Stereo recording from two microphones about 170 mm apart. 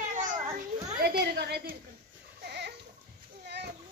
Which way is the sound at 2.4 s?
75° right (ahead or behind).